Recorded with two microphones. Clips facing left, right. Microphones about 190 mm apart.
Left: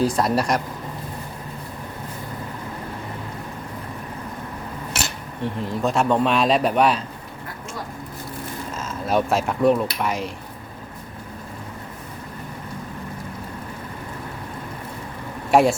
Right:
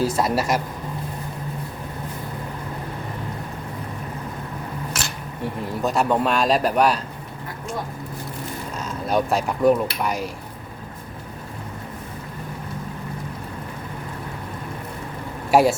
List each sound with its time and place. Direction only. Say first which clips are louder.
0.0 s a man's voice: left 1 dB; centre (ahead or behind)
5.4 s a man's voice: left 1 dB; centre (ahead or behind)
8.9 s a man's voice: even; centre (ahead or behind)
15.4 s speech: even; centre (ahead or behind)